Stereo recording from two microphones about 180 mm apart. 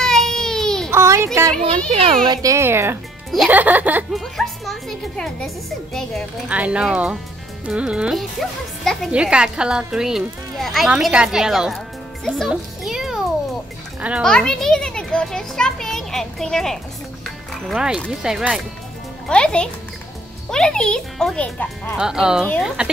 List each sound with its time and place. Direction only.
0.0 s baby cry: 5° left (ahead or behind)
0.9 s a sound: 15° right (ahead or behind)
1.9 s a child's voice: 30° right (ahead or behind)
2.2 s speech: 20° right (ahead or behind)
4.2 s speech: centre (ahead or behind)
14.2 s speech: 5° left (ahead or behind)
21.9 s speech: 5° right (ahead or behind)